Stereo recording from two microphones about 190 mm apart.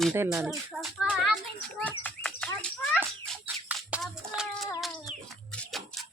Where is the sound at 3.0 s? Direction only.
10° right (ahead or behind).